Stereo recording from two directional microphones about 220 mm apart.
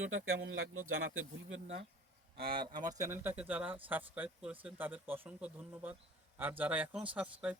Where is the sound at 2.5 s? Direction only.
40° right (ahead or behind).